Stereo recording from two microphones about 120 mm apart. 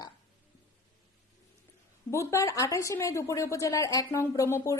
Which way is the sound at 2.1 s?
25° left (ahead or behind).